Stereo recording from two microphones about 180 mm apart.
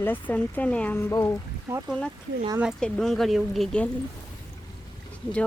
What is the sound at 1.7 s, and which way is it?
Speech, 15° right (ahead or behind).